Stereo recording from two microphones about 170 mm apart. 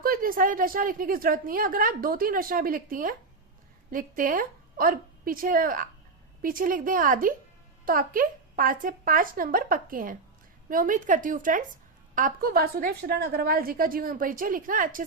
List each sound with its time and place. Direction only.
0.0 s a woman's voice: 55° right (ahead or behind)